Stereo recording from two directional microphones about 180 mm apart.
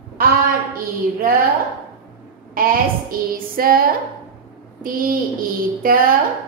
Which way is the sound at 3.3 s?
55° right (ahead or behind).